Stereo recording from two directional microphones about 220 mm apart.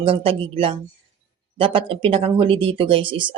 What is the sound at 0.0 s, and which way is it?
Speech, 25° right (ahead or behind).